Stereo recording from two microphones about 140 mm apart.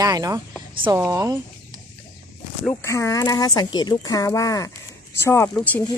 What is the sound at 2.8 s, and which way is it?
Speech, 20° left (ahead or behind).